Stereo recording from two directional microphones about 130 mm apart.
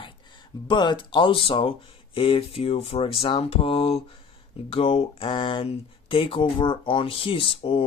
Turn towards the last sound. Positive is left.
turn(degrees=45)  # may be behind; listen again after turning